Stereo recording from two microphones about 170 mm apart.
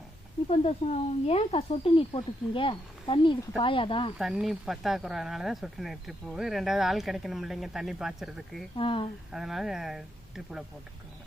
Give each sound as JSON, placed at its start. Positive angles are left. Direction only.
{"t": 0.4, "sound": "speech", "side_deg": 40}
{"t": 4.2, "sound": "speech", "side_deg": 0}
{"t": 8.7, "sound": "speech", "side_deg": 30}
{"t": 9.3, "sound": "speech", "side_deg": 0}